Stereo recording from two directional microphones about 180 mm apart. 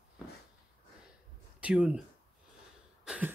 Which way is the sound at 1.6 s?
5° right (ahead or behind).